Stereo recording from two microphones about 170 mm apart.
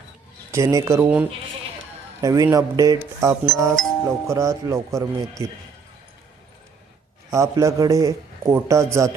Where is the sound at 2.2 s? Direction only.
20° right (ahead or behind).